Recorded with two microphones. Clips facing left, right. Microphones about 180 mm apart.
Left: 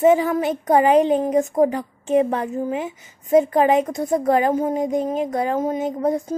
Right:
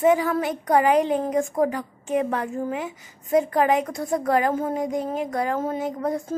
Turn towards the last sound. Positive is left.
turn(degrees=20)  # may be behind; listen again after turning